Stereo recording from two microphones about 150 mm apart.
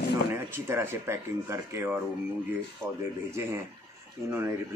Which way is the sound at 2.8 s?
5° left (ahead or behind).